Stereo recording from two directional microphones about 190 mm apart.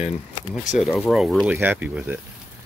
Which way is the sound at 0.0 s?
35° left (ahead or behind).